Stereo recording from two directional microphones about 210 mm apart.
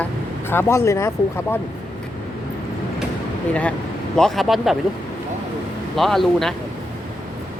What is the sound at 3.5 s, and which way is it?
Speech, 5° left (ahead or behind).